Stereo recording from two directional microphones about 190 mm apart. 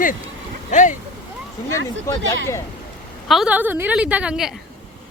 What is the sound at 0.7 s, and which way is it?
Vehicle, 40° left (ahead or behind).